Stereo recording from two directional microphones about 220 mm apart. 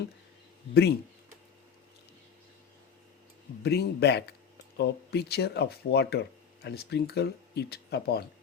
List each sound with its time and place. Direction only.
0.7 s speech: 50° left (ahead or behind)
3.6 s speech: 50° left (ahead or behind)